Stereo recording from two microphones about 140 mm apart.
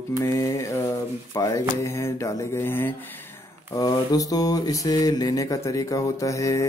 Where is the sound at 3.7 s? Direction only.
25° left (ahead or behind).